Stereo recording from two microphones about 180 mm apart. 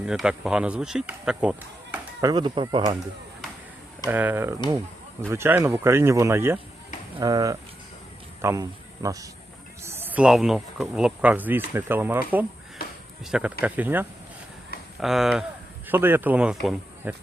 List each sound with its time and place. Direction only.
0.0 s speech: 5° right (ahead or behind)
2.2 s speech: 25° right (ahead or behind)
4.0 s a man's voice: 10° right (ahead or behind)
13.3 s speech: 5° right (ahead or behind)